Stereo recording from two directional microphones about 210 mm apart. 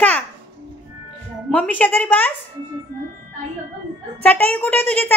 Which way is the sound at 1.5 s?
5° left (ahead or behind).